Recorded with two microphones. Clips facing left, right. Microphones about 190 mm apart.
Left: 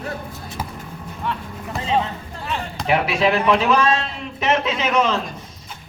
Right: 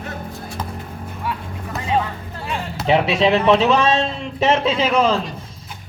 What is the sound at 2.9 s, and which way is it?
Speech, 25° right (ahead or behind).